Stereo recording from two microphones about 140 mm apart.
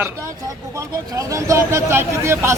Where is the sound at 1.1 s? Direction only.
20° right (ahead or behind).